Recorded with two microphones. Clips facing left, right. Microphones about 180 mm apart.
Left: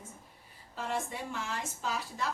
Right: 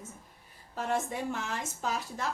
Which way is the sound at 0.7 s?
45° right (ahead or behind).